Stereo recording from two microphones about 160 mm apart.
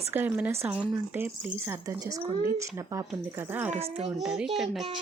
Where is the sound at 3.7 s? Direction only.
40° right (ahead or behind).